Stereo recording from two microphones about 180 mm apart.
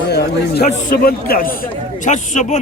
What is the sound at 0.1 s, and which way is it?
A man's voice, 60° left (ahead or behind).